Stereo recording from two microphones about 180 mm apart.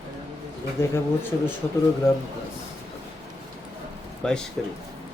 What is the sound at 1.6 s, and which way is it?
Speech, 10° left (ahead or behind).